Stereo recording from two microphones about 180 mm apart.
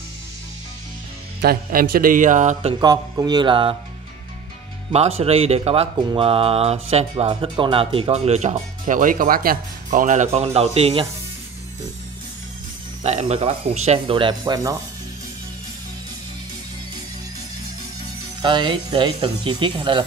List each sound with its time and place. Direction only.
1.4 s speech: 55° right (ahead or behind)
2.8 s speech: 20° right (ahead or behind)
5.2 s speech: 35° right (ahead or behind)
13.0 s speech: 35° right (ahead or behind); by 14.8 s 20° right (ahead or behind)
18.4 s speech: 25° right (ahead or behind)